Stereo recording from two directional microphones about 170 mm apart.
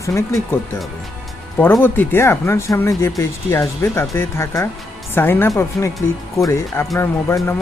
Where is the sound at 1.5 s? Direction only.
10° left (ahead or behind).